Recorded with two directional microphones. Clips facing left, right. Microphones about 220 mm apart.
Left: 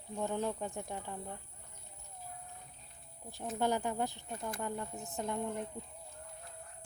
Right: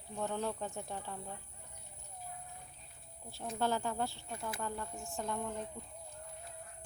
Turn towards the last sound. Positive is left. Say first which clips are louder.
# left 2 dB
turn(degrees=20)  # may be behind; listen again after turning